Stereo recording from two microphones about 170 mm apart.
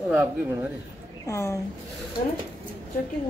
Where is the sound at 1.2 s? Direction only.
15° left (ahead or behind).